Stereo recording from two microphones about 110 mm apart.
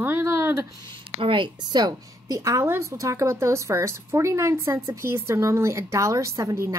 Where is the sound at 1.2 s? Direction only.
50° right (ahead or behind).